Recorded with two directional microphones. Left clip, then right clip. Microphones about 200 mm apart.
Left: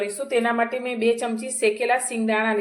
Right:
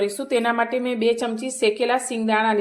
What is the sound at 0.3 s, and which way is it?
Speech, 45° right (ahead or behind).